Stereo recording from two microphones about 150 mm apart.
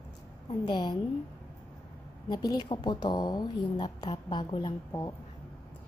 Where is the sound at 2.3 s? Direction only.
25° left (ahead or behind).